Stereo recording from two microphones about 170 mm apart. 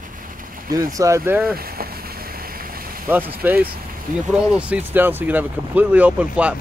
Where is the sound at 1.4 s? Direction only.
60° right (ahead or behind).